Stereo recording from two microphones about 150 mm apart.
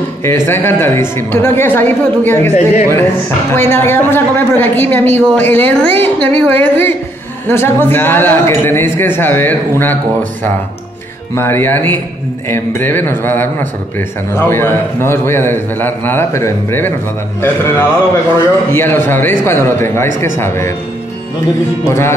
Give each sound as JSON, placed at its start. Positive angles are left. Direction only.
{"t": 0.5, "sound": "a woman's voice", "side_deg": 15}
{"t": 2.5, "sound": "speech", "side_deg": 50}
{"t": 3.5, "sound": "a woman's voice", "side_deg": 15}
{"t": 11.3, "sound": "a woman's voice", "side_deg": 15}
{"t": 21.8, "sound": "a woman's voice", "side_deg": 15}